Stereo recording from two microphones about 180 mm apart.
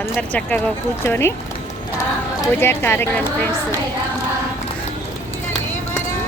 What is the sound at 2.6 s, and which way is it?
Speech, 15° left (ahead or behind).